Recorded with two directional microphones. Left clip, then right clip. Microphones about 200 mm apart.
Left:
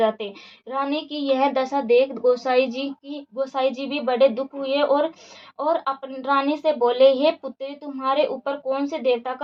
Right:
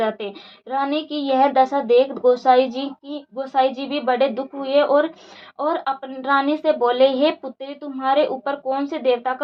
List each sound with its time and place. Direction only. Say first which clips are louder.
0.7 s a woman's voice: right 3 dB; 15° right (ahead or behind)